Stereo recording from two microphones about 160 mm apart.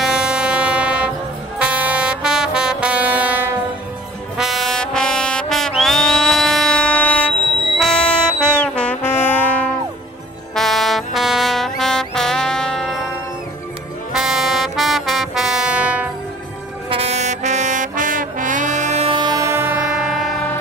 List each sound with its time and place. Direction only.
0.0 s vehicle: 5° right (ahead or behind)
1.6 s brass instrument: 10° right (ahead or behind)
14.1 s music: centre (ahead or behind)
16.9 s brass instrument: 40° right (ahead or behind); by 19.9 s 15° right (ahead or behind)
20.0 s train: centre (ahead or behind)